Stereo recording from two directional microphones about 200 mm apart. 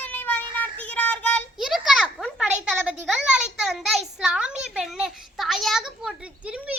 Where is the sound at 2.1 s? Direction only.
Centre (ahead or behind).